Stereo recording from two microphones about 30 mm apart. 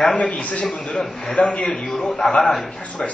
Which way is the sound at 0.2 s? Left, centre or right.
Left.